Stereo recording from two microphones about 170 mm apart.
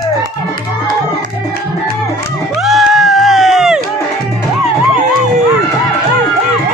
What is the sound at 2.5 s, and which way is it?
Music, centre (ahead or behind).